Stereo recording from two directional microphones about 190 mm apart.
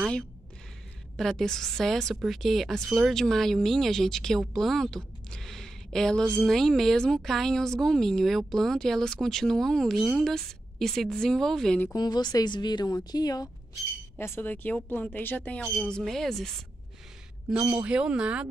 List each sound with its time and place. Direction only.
1.1 s speech: centre (ahead or behind)
11.9 s speech: 20° left (ahead or behind); by 16.5 s centre (ahead or behind)
17.6 s speech: 10° right (ahead or behind)